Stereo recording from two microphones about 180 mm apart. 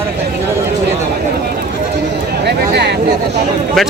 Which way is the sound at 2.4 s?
65° right (ahead or behind).